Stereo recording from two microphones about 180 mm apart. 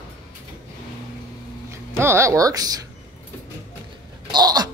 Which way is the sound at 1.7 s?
15° right (ahead or behind).